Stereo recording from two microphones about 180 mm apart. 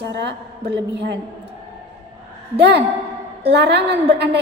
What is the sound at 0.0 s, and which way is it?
A woman's voice, 70° right (ahead or behind).